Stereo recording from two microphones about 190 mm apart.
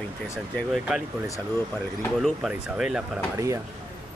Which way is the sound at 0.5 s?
5° right (ahead or behind).